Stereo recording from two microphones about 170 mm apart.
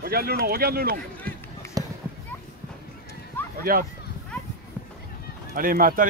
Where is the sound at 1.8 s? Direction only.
20° right (ahead or behind).